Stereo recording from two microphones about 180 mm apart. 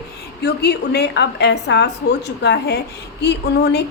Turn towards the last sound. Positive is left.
turn(degrees=65)  # may be behind; listen again after turning